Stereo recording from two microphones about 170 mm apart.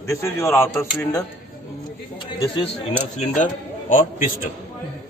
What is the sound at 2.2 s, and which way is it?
Speech, 25° left (ahead or behind).